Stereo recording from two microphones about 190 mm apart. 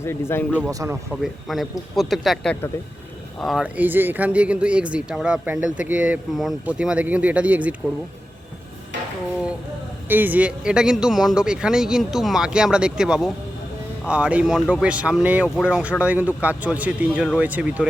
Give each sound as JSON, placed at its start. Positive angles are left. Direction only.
{"t": 0.0, "sound": "speech", "side_deg": 10}
{"t": 0.6, "sound": "speech", "side_deg": -15}
{"t": 1.1, "sound": "speech", "side_deg": 0}
{"t": 10.1, "sound": "speech", "side_deg": -10}